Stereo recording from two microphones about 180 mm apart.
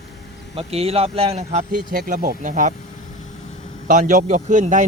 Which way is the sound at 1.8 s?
50° right (ahead or behind).